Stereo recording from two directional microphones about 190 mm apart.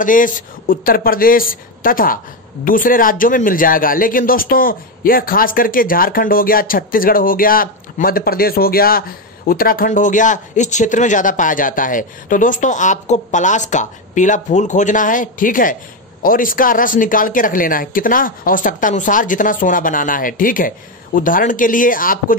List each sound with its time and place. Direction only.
0.0 s speech: 45° left (ahead or behind)